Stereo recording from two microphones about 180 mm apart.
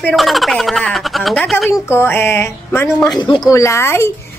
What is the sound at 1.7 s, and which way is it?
A woman's voice, 15° left (ahead or behind).